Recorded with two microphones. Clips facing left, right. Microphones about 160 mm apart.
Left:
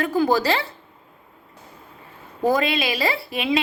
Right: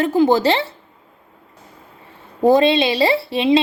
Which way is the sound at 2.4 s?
30° right (ahead or behind).